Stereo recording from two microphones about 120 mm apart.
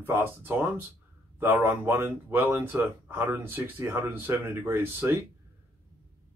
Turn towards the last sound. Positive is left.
turn(degrees=-20)  # may be behind; listen again after turning